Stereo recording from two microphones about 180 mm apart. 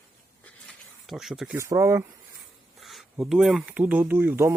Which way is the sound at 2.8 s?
Centre (ahead or behind).